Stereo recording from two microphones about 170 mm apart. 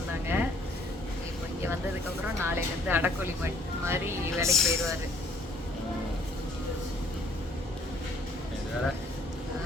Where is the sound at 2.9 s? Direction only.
15° right (ahead or behind).